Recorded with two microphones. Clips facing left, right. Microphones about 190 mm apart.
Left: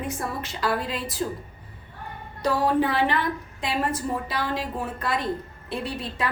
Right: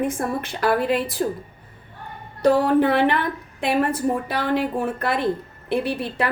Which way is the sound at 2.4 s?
55° right (ahead or behind).